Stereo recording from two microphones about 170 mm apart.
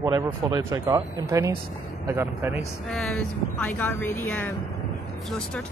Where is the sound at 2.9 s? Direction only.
5° left (ahead or behind).